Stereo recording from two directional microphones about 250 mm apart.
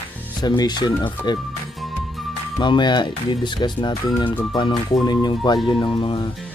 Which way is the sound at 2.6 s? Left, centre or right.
Centre.